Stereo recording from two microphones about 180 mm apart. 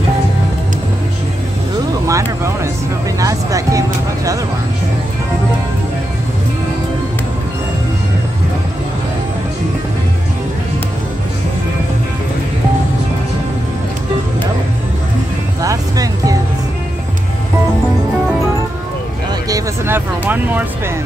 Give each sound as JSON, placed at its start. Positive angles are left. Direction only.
{"t": 2.0, "sound": "vehicle", "side_deg": -15}
{"t": 3.2, "sound": "music", "side_deg": -20}
{"t": 15.6, "sound": "music", "side_deg": -20}
{"t": 19.5, "sound": "a sound", "side_deg": -10}